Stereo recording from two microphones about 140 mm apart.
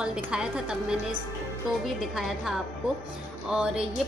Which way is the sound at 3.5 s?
5° right (ahead or behind).